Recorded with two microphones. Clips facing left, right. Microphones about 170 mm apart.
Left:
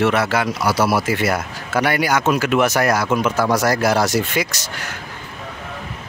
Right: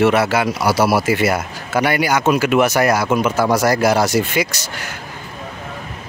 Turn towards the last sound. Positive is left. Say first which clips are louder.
# right 2 dB
turn(degrees=-5)  # may be behind; listen again after turning